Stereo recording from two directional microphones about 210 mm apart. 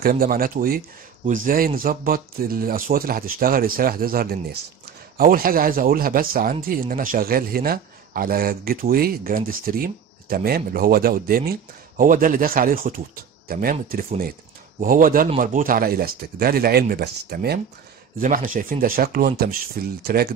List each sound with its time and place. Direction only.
0.0 s speech: 45° right (ahead or behind)